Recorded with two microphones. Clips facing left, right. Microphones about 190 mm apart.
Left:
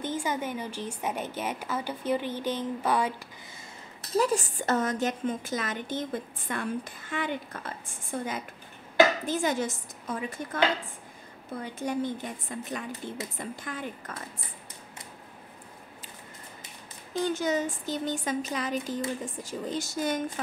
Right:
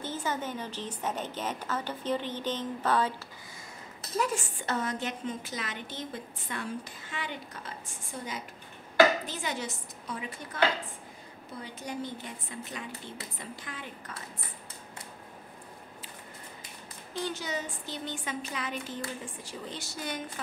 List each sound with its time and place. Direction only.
0.0 s a woman's voice: 15° left (ahead or behind)
4.2 s a woman's voice: 40° left (ahead or behind)
11.6 s a woman's voice: 50° left (ahead or behind)
17.1 s a woman's voice: 45° left (ahead or behind)